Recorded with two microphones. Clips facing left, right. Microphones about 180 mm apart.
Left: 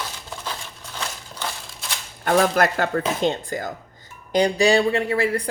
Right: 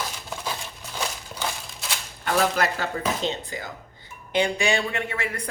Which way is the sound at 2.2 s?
50° left (ahead or behind).